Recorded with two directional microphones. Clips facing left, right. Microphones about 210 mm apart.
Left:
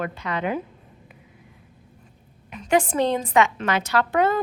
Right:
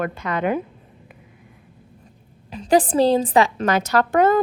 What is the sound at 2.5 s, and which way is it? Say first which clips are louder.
A woman's voice: right 4 dB; 35° right (ahead or behind).